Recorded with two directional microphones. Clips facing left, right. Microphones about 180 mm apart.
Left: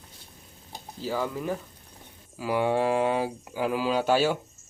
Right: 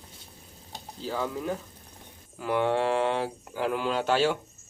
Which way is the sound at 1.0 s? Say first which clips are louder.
Left 2 dB; 5° left (ahead or behind).